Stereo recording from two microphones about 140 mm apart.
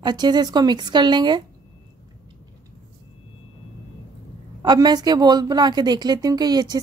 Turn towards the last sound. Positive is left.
turn(degrees=-30)  # may be behind; listen again after turning